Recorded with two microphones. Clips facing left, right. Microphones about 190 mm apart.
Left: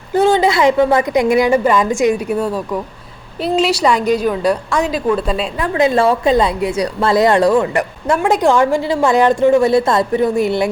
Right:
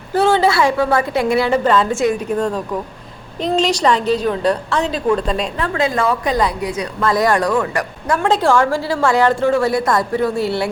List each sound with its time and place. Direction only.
0.1 s a woman's voice: 15° left (ahead or behind)